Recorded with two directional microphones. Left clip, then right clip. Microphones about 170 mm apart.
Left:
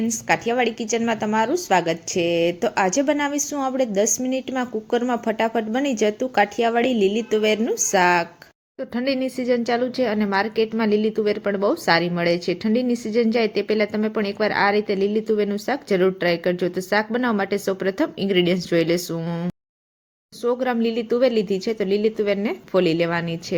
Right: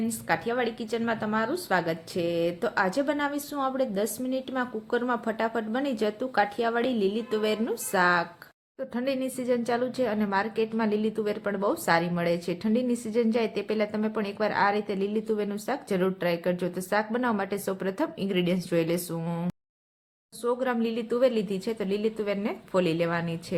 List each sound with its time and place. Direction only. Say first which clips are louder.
0.3 s a woman's voice: left 7 dB; 15° left (ahead or behind)